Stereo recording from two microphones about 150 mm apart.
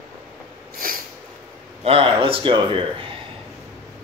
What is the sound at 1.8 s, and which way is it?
A man's voice, 40° right (ahead or behind).